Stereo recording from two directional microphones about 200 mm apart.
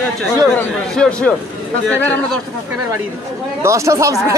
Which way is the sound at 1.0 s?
5° left (ahead or behind).